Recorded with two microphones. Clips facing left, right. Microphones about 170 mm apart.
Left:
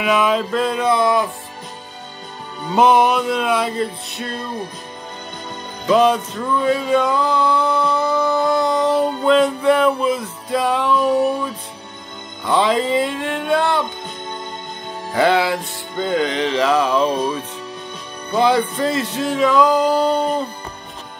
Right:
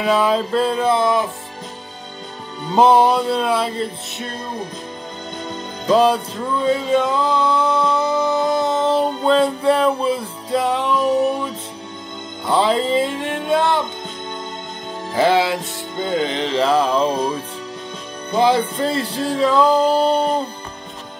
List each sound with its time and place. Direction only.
0.0 s music: 35° right (ahead or behind)
2.7 s music: 30° right (ahead or behind)
5.9 s music: 35° right (ahead or behind)
12.4 s music: 30° right (ahead or behind)
15.1 s music: 25° right (ahead or behind)
18.3 s music: 25° right (ahead or behind)